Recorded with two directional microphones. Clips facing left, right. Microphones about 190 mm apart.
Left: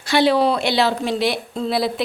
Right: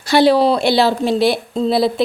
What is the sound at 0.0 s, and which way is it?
Speech, 35° right (ahead or behind).